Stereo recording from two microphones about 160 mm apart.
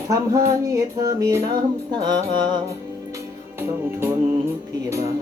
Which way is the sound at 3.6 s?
15° right (ahead or behind).